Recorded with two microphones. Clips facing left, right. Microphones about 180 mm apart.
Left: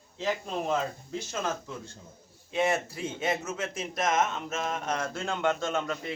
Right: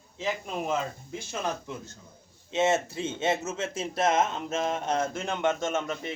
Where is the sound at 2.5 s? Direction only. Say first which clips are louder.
Right 2 dB; 25° right (ahead or behind).